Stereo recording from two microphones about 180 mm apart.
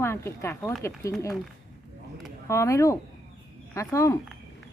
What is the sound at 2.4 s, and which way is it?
Speech, 15° left (ahead or behind).